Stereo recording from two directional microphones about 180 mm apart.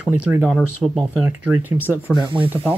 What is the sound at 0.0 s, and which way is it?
Speech, 5° right (ahead or behind).